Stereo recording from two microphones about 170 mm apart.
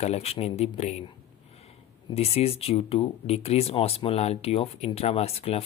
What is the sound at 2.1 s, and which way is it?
Speech, 35° left (ahead or behind).